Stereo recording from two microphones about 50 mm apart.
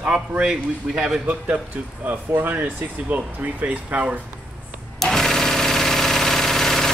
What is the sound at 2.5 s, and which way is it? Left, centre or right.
Speech, right.